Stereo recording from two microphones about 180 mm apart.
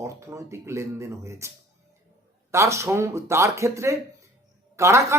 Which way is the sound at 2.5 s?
15° right (ahead or behind).